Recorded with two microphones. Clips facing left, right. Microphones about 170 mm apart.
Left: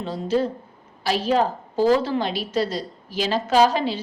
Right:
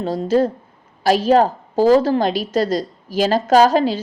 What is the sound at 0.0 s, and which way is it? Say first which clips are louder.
A woman's voice: right 6 dB; 40° right (ahead or behind).